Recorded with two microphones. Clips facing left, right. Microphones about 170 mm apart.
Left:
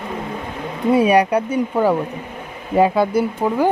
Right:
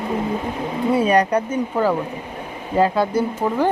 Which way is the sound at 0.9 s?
10° left (ahead or behind).